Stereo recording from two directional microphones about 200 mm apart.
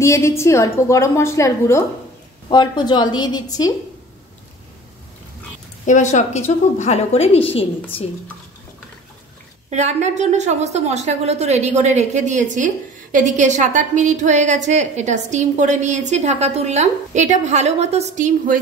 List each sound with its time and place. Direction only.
0.0 s a woman's voice: 15° left (ahead or behind)
5.9 s a woman's voice: 40° left (ahead or behind)
9.7 s a woman's voice: 35° right (ahead or behind)